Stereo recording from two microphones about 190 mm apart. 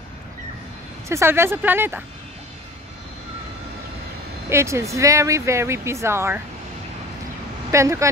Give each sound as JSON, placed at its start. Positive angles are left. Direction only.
{"t": 1.0, "sound": "speech", "side_deg": -15}
{"t": 4.5, "sound": "speech", "side_deg": -15}
{"t": 7.7, "sound": "speech", "side_deg": -15}